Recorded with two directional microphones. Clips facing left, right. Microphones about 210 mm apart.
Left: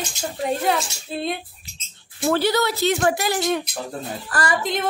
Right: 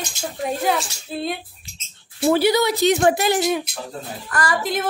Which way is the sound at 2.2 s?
10° right (ahead or behind).